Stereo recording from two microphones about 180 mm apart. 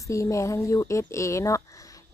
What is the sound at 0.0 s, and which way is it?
A woman's voice, 15° left (ahead or behind).